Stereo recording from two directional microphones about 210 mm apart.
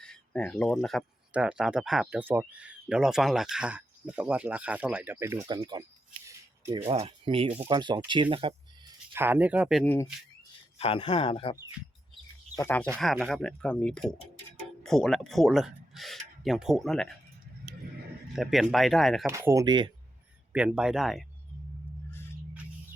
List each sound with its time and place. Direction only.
0.0 s speech: 5° left (ahead or behind); by 5.8 s 20° right (ahead or behind)
6.2 s a sound: 15° right (ahead or behind)
6.9 s speech: 25° right (ahead or behind)
9.1 s speech: 10° right (ahead or behind)
10.8 s speech: 25° left (ahead or behind)
12.5 s speech: 10° left (ahead or behind)
18.3 s speech: centre (ahead or behind)
19.3 s speech: 15° right (ahead or behind)
20.7 s speech: centre (ahead or behind)